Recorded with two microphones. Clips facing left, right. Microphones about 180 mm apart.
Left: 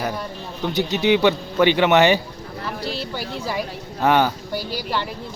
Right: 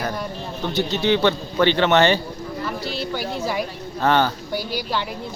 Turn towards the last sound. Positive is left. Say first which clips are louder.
# left 1 dB
turn(degrees=10)  # may be behind; listen again after turning